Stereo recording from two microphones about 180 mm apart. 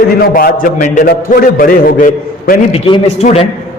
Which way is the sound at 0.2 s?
55° left (ahead or behind).